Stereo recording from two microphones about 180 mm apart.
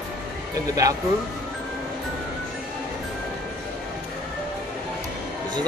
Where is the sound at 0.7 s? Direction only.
20° right (ahead or behind).